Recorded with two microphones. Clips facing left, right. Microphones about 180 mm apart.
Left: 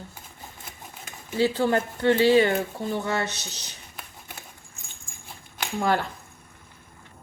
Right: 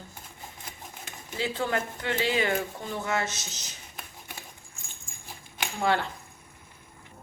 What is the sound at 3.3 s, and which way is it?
Speech, 65° left (ahead or behind).